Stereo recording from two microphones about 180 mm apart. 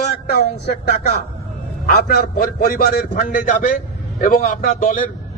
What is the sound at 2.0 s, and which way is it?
Speech, 55° left (ahead or behind).